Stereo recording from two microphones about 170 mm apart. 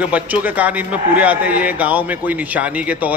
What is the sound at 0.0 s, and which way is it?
A man's voice, 10° right (ahead or behind).